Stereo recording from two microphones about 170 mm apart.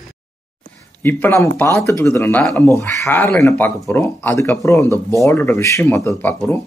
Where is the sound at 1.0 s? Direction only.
10° left (ahead or behind).